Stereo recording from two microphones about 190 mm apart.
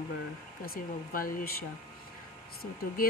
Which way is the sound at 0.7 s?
50° left (ahead or behind).